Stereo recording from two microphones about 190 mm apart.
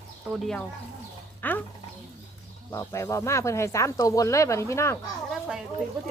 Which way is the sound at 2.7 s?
15° left (ahead or behind).